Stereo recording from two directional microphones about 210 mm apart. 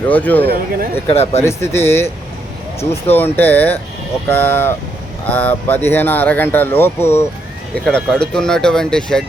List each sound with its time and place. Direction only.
0.1 s speech: 5° left (ahead or behind)
0.4 s speech: 45° right (ahead or behind)
1.1 s speech: 30° left (ahead or behind)
1.4 s speech: 10° left (ahead or behind)
3.1 s speech: 10° left (ahead or behind)